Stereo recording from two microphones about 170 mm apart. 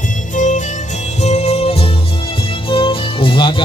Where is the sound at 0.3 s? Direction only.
45° left (ahead or behind).